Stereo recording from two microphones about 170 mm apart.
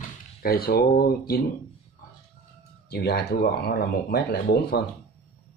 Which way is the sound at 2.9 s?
75° left (ahead or behind).